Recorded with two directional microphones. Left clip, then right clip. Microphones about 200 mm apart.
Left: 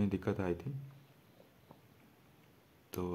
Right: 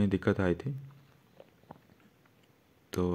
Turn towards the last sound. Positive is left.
turn(degrees=-15)  # may be behind; listen again after turning